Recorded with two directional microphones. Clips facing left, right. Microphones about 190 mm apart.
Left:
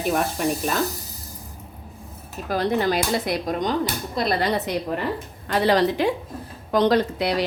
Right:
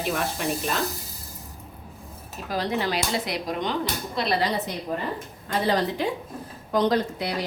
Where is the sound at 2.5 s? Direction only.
50° left (ahead or behind).